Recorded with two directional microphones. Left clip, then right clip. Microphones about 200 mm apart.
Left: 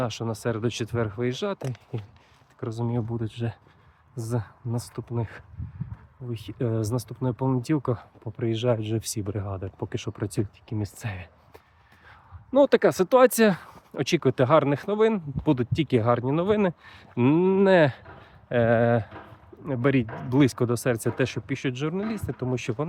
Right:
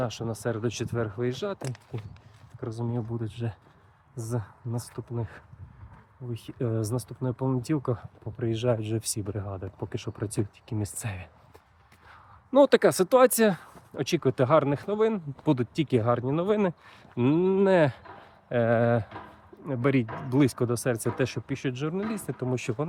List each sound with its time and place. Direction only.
0.0 s speech: 25° left (ahead or behind)
1.6 s speech: 5° right (ahead or behind)
2.6 s speech: 35° left (ahead or behind)
10.7 s speech: 10° left (ahead or behind)
12.5 s speech: centre (ahead or behind)
12.8 s speech: 10° left (ahead or behind)
15.4 s speech: 10° left (ahead or behind)
22.1 s speech: 10° left (ahead or behind)